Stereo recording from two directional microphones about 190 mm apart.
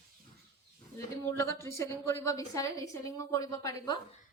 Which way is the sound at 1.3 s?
15° left (ahead or behind).